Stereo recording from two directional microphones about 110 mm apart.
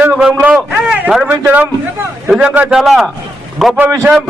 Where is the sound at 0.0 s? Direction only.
10° right (ahead or behind).